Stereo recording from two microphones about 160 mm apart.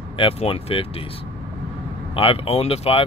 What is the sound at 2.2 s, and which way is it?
Speech, 35° left (ahead or behind).